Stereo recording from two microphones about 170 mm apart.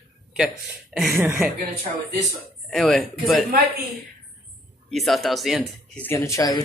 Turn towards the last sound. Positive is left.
turn(degrees=20)  # may be behind; listen again after turning